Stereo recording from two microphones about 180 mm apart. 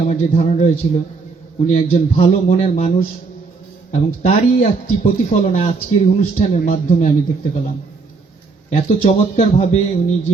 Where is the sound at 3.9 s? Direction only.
40° left (ahead or behind).